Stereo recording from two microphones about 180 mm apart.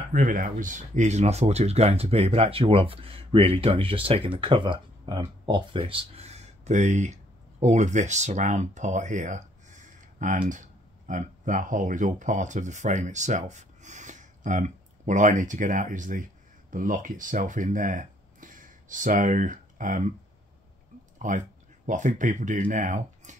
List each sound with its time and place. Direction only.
0.1 s speech: 50° right (ahead or behind)
21.2 s speech: 45° right (ahead or behind)